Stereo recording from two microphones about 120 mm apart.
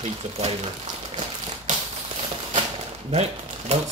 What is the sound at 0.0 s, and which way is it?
Speech, 60° right (ahead or behind).